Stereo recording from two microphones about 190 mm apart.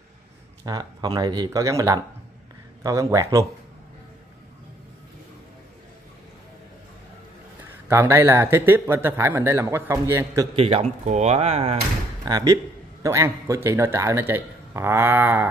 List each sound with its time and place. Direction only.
0.7 s speech: 20° right (ahead or behind)
7.9 s speech: 10° right (ahead or behind)
10.5 s speech: 30° right (ahead or behind)
12.3 s speech: 20° right (ahead or behind)